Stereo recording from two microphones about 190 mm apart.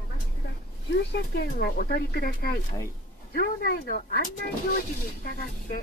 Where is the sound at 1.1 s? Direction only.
55° left (ahead or behind).